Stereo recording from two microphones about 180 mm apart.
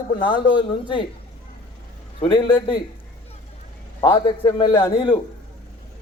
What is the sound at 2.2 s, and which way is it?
Speech, 25° left (ahead or behind).